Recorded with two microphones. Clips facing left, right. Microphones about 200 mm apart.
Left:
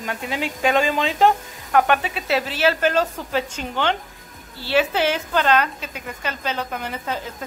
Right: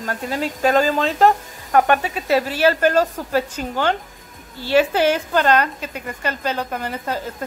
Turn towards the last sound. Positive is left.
turn(degrees=-10)  # may be behind; listen again after turning